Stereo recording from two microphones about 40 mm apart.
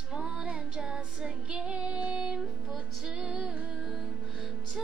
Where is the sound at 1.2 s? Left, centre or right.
Centre.